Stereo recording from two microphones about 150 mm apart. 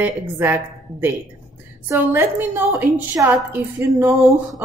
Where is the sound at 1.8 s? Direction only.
15° right (ahead or behind).